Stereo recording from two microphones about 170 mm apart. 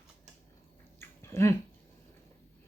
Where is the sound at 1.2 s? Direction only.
15° left (ahead or behind).